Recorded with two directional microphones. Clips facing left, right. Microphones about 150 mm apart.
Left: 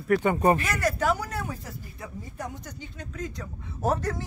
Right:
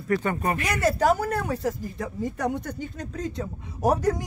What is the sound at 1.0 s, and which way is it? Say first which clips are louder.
A woman's voice: right 5 dB; 45° right (ahead or behind).